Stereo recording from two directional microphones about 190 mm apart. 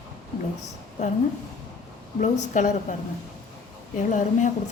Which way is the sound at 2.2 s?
40° left (ahead or behind).